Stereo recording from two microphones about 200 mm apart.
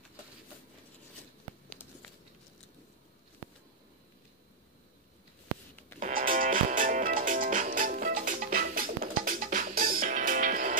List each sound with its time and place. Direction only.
5.9 s music: 40° right (ahead or behind)